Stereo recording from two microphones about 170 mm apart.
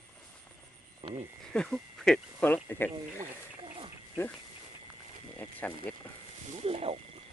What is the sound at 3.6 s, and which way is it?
Wild animals, 30° right (ahead or behind).